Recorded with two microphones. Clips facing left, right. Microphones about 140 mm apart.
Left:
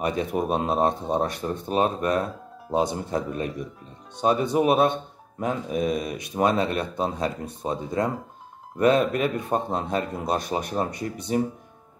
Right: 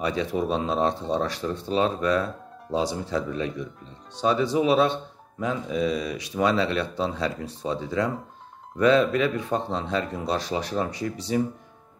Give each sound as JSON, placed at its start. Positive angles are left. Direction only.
{"t": 0.0, "sound": "speech", "side_deg": 50}